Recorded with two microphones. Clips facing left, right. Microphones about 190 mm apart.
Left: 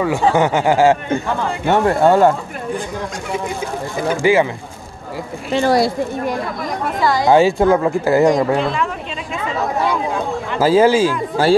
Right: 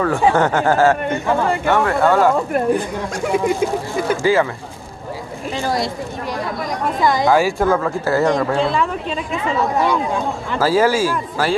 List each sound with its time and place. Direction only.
0.3 s speech: 10° left (ahead or behind)
1.7 s speech: 25° left (ahead or behind)
4.2 s speech: 20° left (ahead or behind)
5.5 s speech: 65° left (ahead or behind)
7.2 s speech: 25° left (ahead or behind)
10.6 s speech: 20° left (ahead or behind)